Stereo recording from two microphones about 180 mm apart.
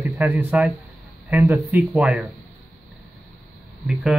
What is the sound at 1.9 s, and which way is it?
Speech, centre (ahead or behind).